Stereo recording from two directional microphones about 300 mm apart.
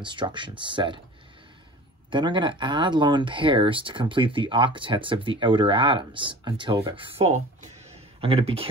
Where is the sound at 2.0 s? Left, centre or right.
Centre.